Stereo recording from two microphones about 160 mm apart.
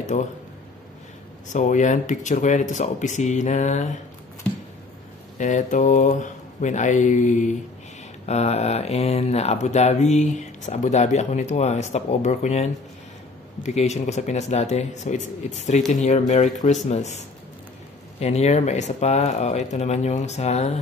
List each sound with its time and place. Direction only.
0.0 s speech: 50° left (ahead or behind)
1.5 s speech: 50° left (ahead or behind)
5.4 s speech: 50° left (ahead or behind)
18.2 s speech: 45° left (ahead or behind)